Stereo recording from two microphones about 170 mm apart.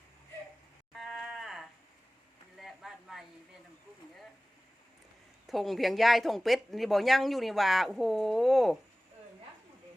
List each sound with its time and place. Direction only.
0.9 s livestock: centre (ahead or behind)
2.6 s a sound: centre (ahead or behind)
5.5 s speech: centre (ahead or behind)